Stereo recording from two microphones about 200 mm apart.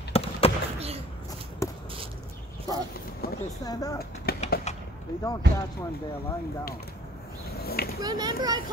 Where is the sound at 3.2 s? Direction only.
50° left (ahead or behind).